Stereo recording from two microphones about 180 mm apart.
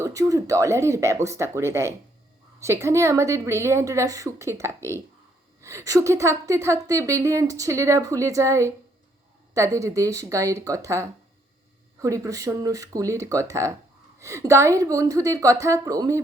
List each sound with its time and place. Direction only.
0.0 s a woman's voice: 20° right (ahead or behind)